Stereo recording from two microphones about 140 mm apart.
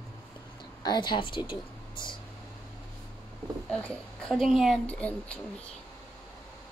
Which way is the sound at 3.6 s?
10° left (ahead or behind).